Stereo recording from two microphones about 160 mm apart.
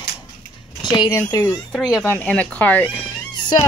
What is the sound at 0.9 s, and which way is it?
Speech, 25° left (ahead or behind).